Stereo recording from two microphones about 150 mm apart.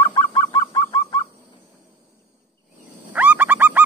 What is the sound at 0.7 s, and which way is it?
Chicken, 25° left (ahead or behind).